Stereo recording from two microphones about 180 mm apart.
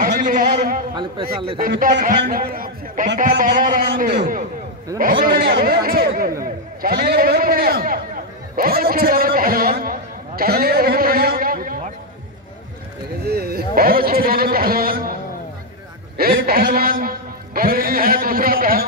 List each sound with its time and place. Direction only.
0.0 s a sound: 50° right (ahead or behind)
1.6 s a man's voice: 50° right (ahead or behind)
13.3 s a man's voice: 60° right (ahead or behind)
16.3 s a man's voice: 55° right (ahead or behind)